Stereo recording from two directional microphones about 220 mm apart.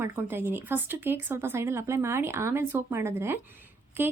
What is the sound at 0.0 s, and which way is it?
A woman's voice, 10° right (ahead or behind).